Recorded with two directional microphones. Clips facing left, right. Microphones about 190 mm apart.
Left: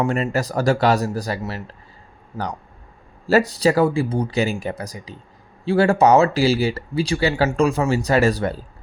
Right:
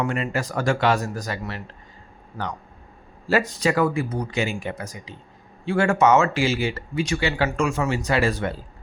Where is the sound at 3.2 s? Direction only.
40° left (ahead or behind).